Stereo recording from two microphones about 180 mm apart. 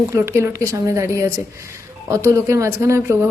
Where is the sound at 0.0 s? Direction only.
15° right (ahead or behind).